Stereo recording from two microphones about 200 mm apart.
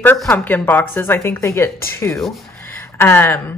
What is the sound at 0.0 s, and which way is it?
Speech, 10° left (ahead or behind).